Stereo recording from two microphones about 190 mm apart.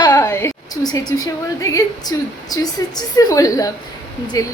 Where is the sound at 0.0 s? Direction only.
20° left (ahead or behind).